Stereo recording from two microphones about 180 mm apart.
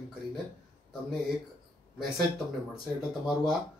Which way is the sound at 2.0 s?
Centre (ahead or behind).